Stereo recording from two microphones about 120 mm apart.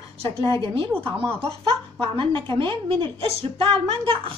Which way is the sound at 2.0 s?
45° right (ahead or behind).